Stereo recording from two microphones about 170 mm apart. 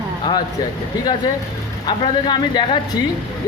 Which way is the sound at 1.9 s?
25° left (ahead or behind).